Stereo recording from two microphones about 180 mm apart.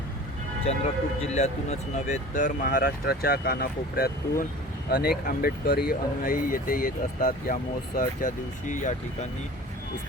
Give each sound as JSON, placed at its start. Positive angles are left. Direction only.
{"t": 0.7, "sound": "speech", "side_deg": 40}